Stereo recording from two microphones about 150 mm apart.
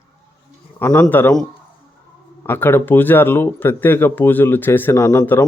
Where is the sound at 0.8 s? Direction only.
10° left (ahead or behind).